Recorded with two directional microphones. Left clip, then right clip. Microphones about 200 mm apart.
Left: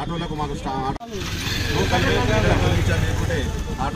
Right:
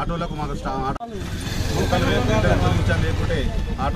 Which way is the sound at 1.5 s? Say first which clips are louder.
Left 2 dB; 35° right (ahead or behind).